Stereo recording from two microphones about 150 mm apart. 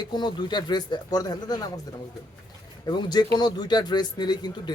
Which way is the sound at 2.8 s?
30° left (ahead or behind).